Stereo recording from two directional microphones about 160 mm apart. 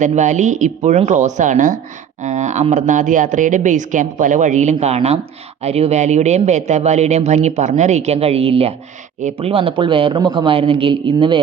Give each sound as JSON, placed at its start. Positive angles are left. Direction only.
{"t": 0.0, "sound": "a man's voice", "side_deg": -50}